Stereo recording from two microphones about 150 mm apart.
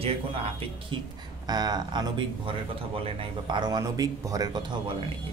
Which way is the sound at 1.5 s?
25° right (ahead or behind).